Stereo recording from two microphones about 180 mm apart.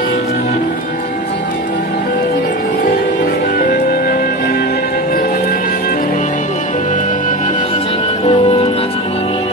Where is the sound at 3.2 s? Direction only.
55° left (ahead or behind).